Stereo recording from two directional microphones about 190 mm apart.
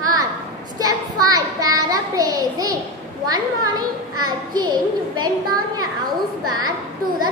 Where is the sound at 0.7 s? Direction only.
20° right (ahead or behind).